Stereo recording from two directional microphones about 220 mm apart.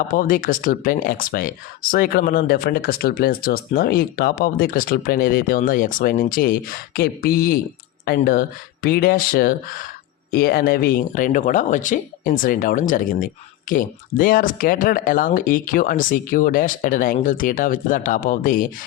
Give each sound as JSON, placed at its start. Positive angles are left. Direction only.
{"t": 0.1, "sound": "speech", "side_deg": 40}